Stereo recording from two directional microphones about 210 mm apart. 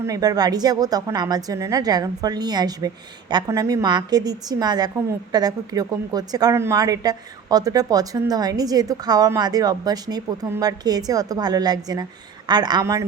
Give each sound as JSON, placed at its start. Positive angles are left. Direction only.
{"t": 0.0, "sound": "a woman's voice", "side_deg": -15}